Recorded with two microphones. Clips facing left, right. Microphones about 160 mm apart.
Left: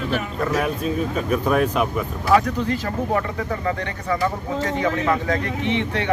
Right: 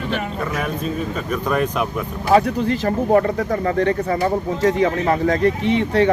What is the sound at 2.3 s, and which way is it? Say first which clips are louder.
Speech: right 3 dB; 30° right (ahead or behind).